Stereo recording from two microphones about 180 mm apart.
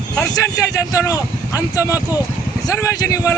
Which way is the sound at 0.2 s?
15° left (ahead or behind).